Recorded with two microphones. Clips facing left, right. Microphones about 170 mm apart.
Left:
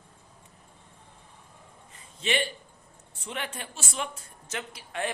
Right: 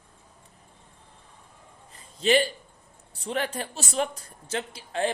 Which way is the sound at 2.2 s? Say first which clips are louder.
Right 7 dB; 35° right (ahead or behind).